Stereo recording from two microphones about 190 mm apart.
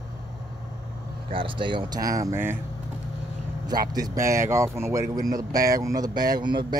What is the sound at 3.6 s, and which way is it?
Speech, 20° right (ahead or behind).